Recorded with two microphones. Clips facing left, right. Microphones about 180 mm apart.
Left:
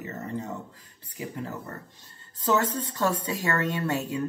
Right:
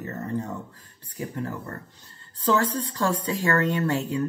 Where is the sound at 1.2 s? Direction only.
15° left (ahead or behind).